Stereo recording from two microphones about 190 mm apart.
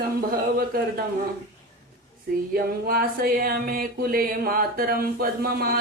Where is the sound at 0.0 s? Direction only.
50° right (ahead or behind).